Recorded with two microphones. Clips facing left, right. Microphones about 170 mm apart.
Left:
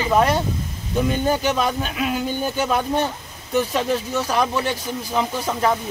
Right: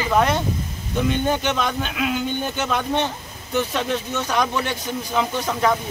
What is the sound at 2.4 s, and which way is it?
A man's voice, 5° left (ahead or behind).